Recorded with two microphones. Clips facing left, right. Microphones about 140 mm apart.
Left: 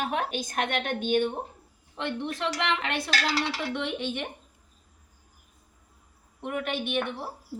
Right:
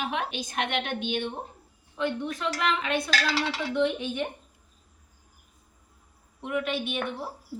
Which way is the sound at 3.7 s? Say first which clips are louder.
Right 5 dB; 90° left.